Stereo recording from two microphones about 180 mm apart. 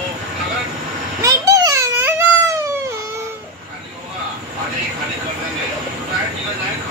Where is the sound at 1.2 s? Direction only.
20° right (ahead or behind).